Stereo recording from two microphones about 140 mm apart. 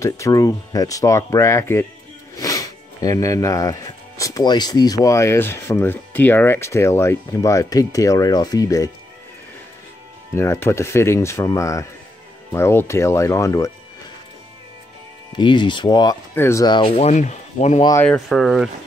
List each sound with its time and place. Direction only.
0.0 s speech: 25° left (ahead or behind)
10.3 s speech: 20° left (ahead or behind)
15.3 s speech: 35° left (ahead or behind)
16.3 s speech: 20° left (ahead or behind)
16.6 s speech: 35° left (ahead or behind); by 17.8 s 55° left (ahead or behind)
18.0 s speech: 5° left (ahead or behind)